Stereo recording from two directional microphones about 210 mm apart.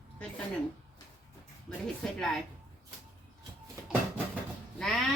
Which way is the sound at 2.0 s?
5° left (ahead or behind).